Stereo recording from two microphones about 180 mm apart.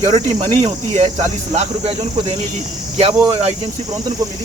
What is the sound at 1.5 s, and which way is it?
Speech, 35° right (ahead or behind).